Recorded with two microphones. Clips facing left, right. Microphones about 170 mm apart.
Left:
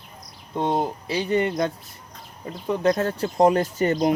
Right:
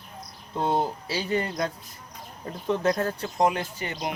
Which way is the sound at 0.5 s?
20° left (ahead or behind).